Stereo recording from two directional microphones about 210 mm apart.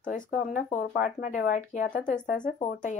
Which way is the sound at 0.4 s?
40° left (ahead or behind).